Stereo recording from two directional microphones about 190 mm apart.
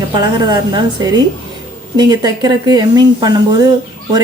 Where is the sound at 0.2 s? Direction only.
25° right (ahead or behind).